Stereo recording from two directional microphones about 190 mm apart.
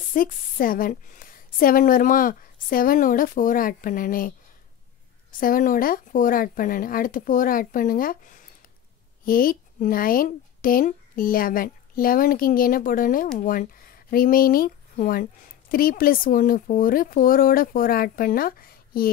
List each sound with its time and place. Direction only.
0.1 s a woman's voice: 45° left (ahead or behind)
5.4 s a woman's voice: 45° left (ahead or behind)